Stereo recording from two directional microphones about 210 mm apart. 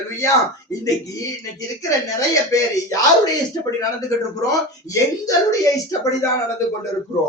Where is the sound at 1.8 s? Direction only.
15° left (ahead or behind).